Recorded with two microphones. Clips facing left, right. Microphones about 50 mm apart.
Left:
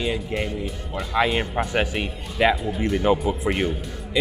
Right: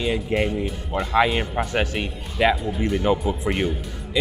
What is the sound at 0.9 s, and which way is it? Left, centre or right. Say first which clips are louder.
Speech: right 7 dB; right.